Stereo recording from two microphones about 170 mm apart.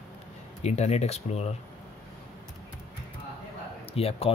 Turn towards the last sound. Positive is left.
turn(degrees=35)  # may be behind; listen again after turning